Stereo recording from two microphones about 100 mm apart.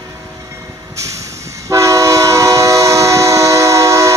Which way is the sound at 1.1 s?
30° right (ahead or behind).